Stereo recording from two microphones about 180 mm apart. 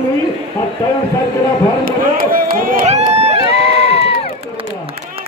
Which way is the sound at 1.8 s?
55° right (ahead or behind).